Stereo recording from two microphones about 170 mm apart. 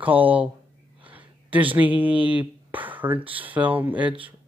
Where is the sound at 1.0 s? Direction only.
10° right (ahead or behind).